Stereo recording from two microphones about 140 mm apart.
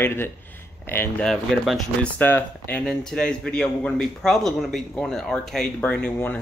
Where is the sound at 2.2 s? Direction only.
15° left (ahead or behind).